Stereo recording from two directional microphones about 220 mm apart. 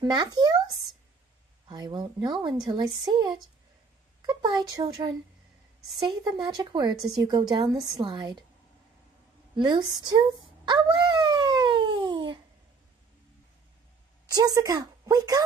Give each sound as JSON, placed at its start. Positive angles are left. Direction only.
{"t": 0.0, "sound": "a woman's voice", "side_deg": -20}
{"t": 1.7, "sound": "speech", "side_deg": -20}
{"t": 9.6, "sound": "speech", "side_deg": -20}
{"t": 10.6, "sound": "dog", "side_deg": -20}
{"t": 14.3, "sound": "a woman's voice", "side_deg": -15}